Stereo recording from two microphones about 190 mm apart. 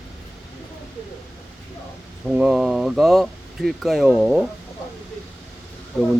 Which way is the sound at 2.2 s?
5° right (ahead or behind).